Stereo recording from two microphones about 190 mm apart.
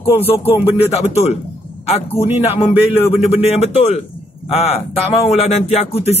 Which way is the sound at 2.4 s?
35° left (ahead or behind).